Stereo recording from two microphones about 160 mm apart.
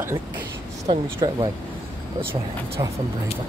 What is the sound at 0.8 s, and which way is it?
Speech, 35° right (ahead or behind).